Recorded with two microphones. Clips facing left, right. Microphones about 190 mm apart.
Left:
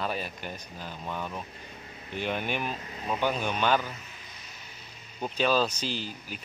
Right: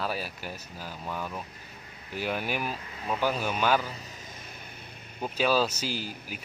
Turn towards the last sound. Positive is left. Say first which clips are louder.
# even
turn(degrees=-10)  # may be behind; listen again after turning